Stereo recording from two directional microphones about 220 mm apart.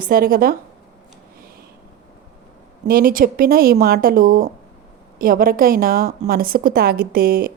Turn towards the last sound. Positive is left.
turn(degrees=-40)  # may be behind; listen again after turning